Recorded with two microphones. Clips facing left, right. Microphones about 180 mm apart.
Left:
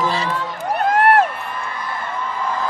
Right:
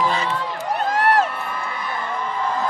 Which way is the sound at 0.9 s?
55° left (ahead or behind).